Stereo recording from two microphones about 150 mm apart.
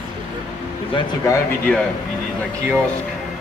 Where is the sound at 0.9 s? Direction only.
25° left (ahead or behind).